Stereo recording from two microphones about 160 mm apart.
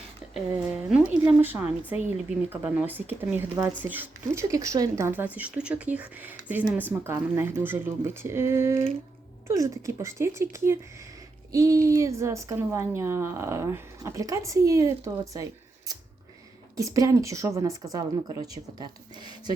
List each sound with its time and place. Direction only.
0.3 s a woman's voice: 5° right (ahead or behind); by 15.4 s 20° right (ahead or behind)
16.7 s a woman's voice: 20° right (ahead or behind)